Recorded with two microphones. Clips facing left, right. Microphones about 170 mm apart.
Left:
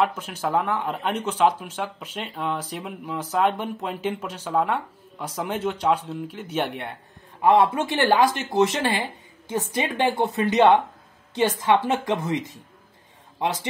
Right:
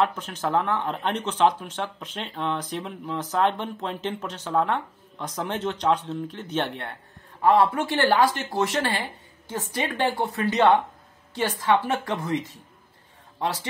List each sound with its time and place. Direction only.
0.0 s speech: 10° left (ahead or behind)